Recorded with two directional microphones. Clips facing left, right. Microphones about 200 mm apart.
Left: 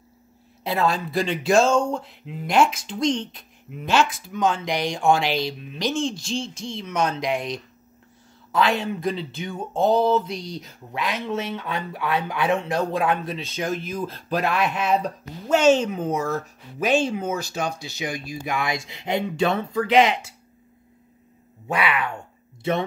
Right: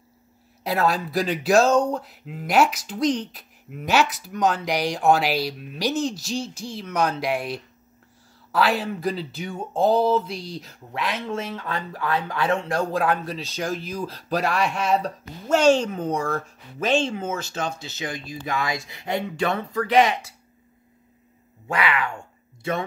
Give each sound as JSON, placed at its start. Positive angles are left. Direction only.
{"t": 0.7, "sound": "speech", "side_deg": -5}
{"t": 12.2, "sound": "speech", "side_deg": 20}
{"t": 12.6, "sound": "speech", "side_deg": 0}
{"t": 21.6, "sound": "speech", "side_deg": 15}